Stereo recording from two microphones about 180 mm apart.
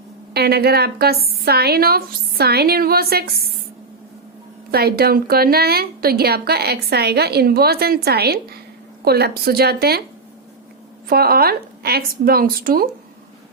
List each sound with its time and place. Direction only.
0.3 s a woman's voice: 60° right (ahead or behind)
4.7 s a woman's voice: 60° right (ahead or behind)
11.1 s a woman's voice: 55° right (ahead or behind)